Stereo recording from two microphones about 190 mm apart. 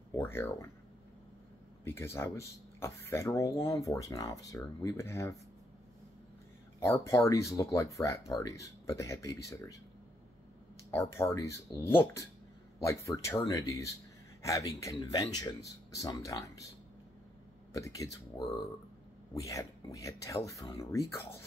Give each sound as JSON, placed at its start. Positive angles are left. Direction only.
{"t": 0.1, "sound": "speech", "side_deg": 10}
{"t": 1.9, "sound": "speech", "side_deg": 15}
{"t": 6.8, "sound": "speech", "side_deg": 15}
{"t": 10.9, "sound": "speech", "side_deg": 15}
{"t": 17.7, "sound": "speech", "side_deg": 15}
{"t": 19.3, "sound": "speech", "side_deg": 15}